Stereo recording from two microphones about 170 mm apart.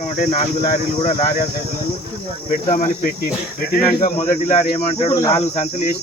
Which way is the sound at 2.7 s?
45° left (ahead or behind).